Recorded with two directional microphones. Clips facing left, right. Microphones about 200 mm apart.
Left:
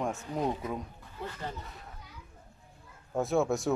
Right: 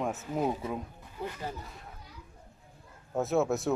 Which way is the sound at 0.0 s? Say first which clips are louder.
Right 1 dB; 5° right (ahead or behind).